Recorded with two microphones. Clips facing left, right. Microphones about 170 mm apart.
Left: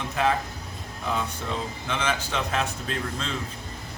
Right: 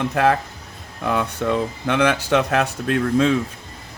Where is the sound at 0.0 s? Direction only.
65° right (ahead or behind).